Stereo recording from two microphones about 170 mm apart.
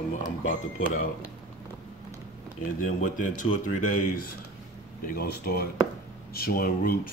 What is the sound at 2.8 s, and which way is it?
A man's voice, 50° left (ahead or behind).